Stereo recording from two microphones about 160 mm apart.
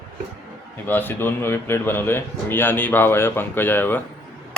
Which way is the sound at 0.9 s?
10° left (ahead or behind).